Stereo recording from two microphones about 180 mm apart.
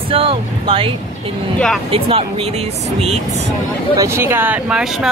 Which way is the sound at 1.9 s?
30° right (ahead or behind).